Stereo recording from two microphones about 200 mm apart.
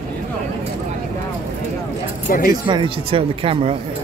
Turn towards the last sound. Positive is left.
turn(degrees=-30)  # may be behind; listen again after turning